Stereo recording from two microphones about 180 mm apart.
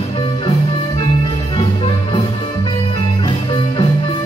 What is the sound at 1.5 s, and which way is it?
Music, 30° left (ahead or behind).